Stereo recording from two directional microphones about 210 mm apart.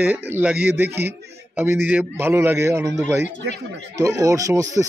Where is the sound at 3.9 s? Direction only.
15° right (ahead or behind).